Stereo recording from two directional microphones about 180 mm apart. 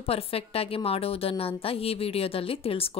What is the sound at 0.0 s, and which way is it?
Speech, 35° left (ahead or behind).